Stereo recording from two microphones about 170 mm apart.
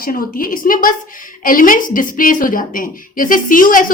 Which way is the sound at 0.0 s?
55° left (ahead or behind).